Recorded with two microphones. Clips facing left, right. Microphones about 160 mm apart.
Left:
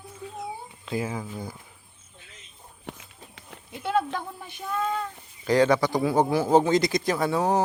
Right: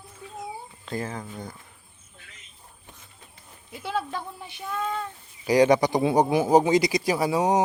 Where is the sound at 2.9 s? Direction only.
75° left (ahead or behind).